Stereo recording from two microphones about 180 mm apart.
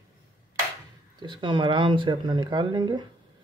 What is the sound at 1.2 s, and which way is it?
Speech, 25° right (ahead or behind).